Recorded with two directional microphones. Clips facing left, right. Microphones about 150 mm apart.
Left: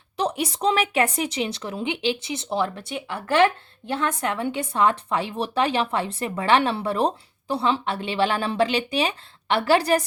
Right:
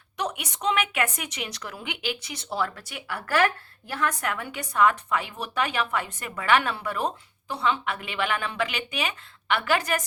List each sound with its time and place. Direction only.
0.2 s a woman's voice: 30° left (ahead or behind)